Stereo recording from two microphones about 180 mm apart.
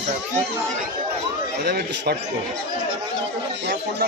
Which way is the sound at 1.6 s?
60° right (ahead or behind).